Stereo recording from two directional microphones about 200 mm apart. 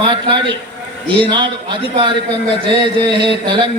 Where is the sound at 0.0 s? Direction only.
25° right (ahead or behind).